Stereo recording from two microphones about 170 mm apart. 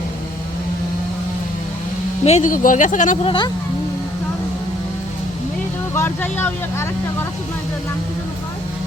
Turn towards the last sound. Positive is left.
turn(degrees=15)  # may be behind; listen again after turning